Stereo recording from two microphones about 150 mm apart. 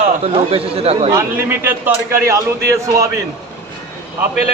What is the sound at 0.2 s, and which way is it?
Speech, 40° right (ahead or behind).